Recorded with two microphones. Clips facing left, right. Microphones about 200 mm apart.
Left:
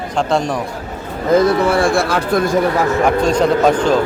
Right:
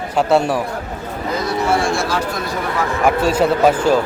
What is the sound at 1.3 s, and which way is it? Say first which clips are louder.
Speech: left 7 dB; 55° left (ahead or behind).